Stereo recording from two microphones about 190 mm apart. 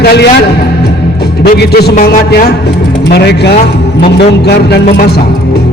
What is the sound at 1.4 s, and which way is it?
A man's voice, 60° left (ahead or behind).